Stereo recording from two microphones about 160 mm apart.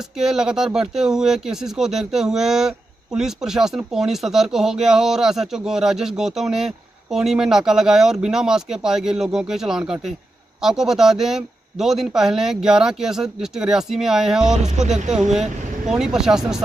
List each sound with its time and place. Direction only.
0.2 s speech: 5° right (ahead or behind)